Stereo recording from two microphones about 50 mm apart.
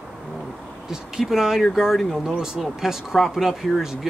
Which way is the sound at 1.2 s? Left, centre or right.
Centre.